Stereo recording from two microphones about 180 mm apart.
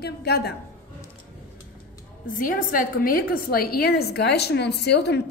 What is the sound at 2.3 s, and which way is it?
A woman's voice, 50° left (ahead or behind).